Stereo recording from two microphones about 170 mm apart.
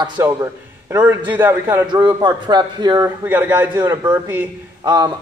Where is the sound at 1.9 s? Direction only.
25° right (ahead or behind).